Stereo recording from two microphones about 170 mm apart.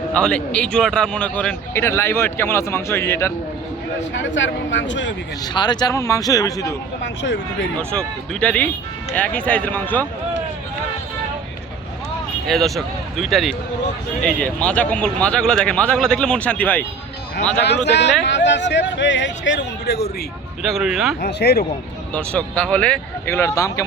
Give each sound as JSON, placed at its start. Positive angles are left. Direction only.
{"t": 0.1, "sound": "a man's voice", "side_deg": 5}
{"t": 4.1, "sound": "speech", "side_deg": 90}
{"t": 5.4, "sound": "a man's voice", "side_deg": 25}
{"t": 7.0, "sound": "speech", "side_deg": 90}
{"t": 7.8, "sound": "a man's voice", "side_deg": 5}
{"t": 12.5, "sound": "speech", "side_deg": 0}
{"t": 17.6, "sound": "speech", "side_deg": 85}
{"t": 20.6, "sound": "speech", "side_deg": 0}
{"t": 21.2, "sound": "speech", "side_deg": 70}
{"t": 22.1, "sound": "a man's voice", "side_deg": 10}